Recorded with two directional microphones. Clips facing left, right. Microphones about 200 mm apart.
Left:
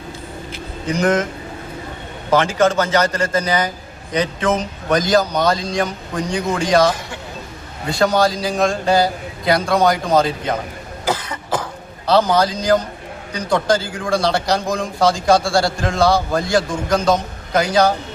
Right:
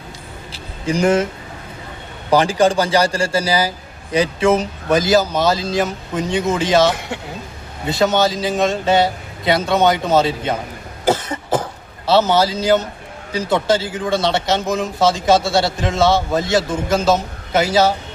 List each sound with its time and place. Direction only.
0.5 s vehicle: 30° right (ahead or behind)
2.4 s a man's voice: 35° right (ahead or behind)
3.1 s a man's voice: 10° right (ahead or behind)
12.0 s a man's voice: 5° right (ahead or behind)